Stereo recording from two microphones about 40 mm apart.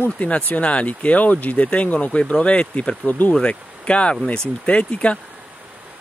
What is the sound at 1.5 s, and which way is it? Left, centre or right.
Speech, left.